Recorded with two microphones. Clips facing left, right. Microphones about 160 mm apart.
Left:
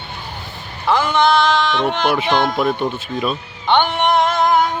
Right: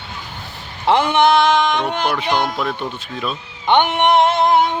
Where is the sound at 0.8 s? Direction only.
25° right (ahead or behind).